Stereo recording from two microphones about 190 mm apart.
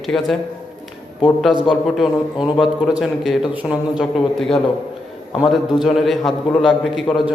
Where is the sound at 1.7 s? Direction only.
Centre (ahead or behind).